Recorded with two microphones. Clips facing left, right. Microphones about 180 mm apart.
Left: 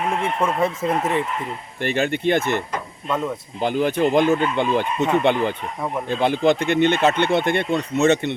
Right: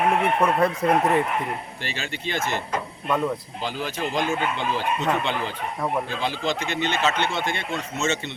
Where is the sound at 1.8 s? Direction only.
55° left (ahead or behind).